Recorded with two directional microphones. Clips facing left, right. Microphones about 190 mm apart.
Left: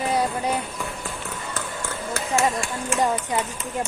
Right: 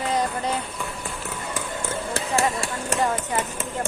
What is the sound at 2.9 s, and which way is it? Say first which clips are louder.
Speech: left 1 dB; 15° left (ahead or behind).